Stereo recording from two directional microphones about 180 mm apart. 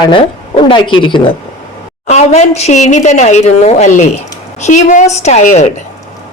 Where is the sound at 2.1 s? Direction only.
40° left (ahead or behind).